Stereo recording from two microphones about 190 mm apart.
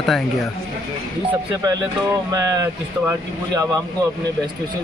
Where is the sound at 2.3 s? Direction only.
15° right (ahead or behind).